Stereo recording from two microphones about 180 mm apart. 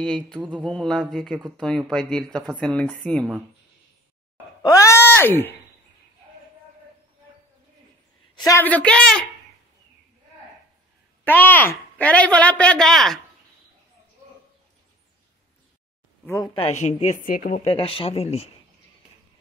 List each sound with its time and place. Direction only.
0.0 s speech: 5° left (ahead or behind)
0.4 s a sound: 5° right (ahead or behind)
0.7 s speech: 5° left (ahead or behind)
4.6 s speech: 15° left (ahead or behind)
8.4 s a woman's voice: 15° left (ahead or behind)
11.2 s a woman's voice: 10° left (ahead or behind)
16.5 s a woman's voice: 35° left (ahead or behind)
17.6 s a woman's voice: 30° left (ahead or behind)